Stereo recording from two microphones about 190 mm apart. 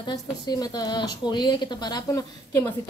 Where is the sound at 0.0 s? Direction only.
20° left (ahead or behind).